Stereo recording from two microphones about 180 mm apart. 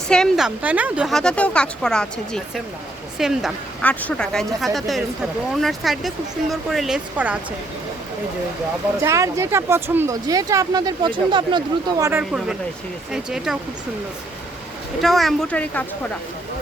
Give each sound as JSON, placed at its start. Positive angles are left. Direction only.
{"t": 0.1, "sound": "a woman's voice", "side_deg": 0}
{"t": 9.0, "sound": "speech", "side_deg": -15}
{"t": 13.1, "sound": "a woman's voice", "side_deg": -5}
{"t": 15.0, "sound": "a woman's voice", "side_deg": 0}